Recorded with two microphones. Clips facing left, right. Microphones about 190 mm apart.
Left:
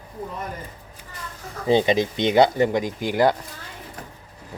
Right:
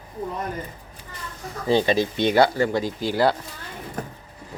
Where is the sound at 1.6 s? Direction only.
20° left (ahead or behind).